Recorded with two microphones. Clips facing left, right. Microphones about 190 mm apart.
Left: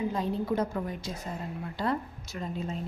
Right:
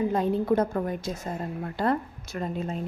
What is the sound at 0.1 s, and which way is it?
A woman's voice, 55° right (ahead or behind).